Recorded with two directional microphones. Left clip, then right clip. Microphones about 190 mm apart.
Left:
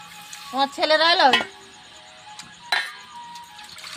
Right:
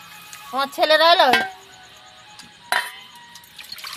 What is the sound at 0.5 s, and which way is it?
Speech, 30° right (ahead or behind).